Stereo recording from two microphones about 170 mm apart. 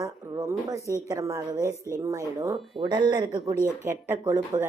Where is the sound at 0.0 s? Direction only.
20° right (ahead or behind).